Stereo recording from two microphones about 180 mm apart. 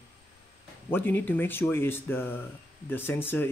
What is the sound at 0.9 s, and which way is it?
Speech, 10° left (ahead or behind).